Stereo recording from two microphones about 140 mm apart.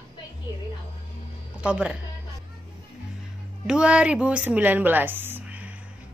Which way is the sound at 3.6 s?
5° right (ahead or behind).